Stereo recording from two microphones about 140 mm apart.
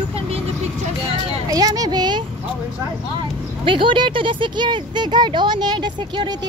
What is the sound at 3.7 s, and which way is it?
Speech, 35° right (ahead or behind).